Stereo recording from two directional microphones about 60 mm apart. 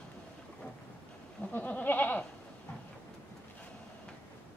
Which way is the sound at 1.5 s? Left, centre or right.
Left.